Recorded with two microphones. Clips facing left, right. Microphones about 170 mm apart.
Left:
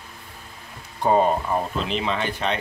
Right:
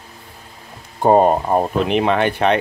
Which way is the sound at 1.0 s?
50° right (ahead or behind).